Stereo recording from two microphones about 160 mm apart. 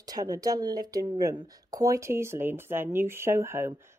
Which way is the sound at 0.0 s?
25° right (ahead or behind).